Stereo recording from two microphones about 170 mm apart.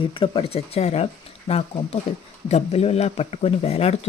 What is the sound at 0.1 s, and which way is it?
Speech, 30° left (ahead or behind).